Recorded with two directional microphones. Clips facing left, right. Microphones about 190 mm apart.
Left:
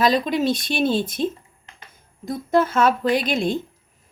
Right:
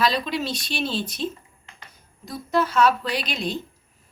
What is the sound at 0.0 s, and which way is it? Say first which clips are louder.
Speech: left 5 dB; 50° left (ahead or behind).